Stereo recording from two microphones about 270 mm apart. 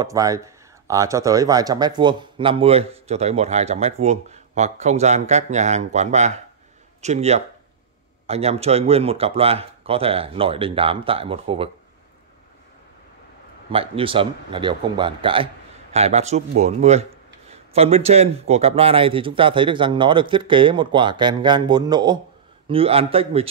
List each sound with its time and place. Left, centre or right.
0.0 s speech: centre
13.7 s speech: centre